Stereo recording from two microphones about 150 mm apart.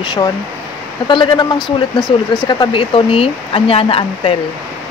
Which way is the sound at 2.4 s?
35° left (ahead or behind).